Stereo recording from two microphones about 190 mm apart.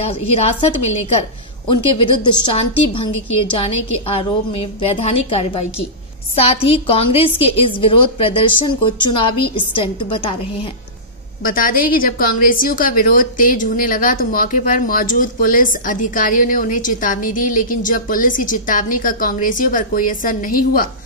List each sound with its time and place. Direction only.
0.0 s a woman's voice: 30° left (ahead or behind)
11.4 s a woman's voice: 50° left (ahead or behind)